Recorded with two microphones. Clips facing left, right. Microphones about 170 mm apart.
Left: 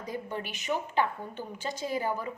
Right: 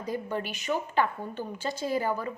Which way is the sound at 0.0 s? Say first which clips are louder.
Right 4 dB; 20° left (ahead or behind).